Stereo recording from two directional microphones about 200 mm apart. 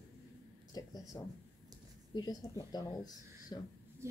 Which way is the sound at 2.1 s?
20° left (ahead or behind).